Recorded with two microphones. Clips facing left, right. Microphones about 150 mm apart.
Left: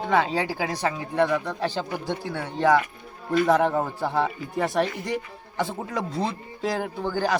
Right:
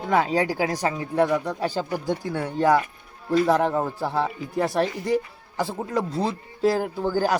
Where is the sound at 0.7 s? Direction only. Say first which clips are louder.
Right 2 dB; 10° right (ahead or behind).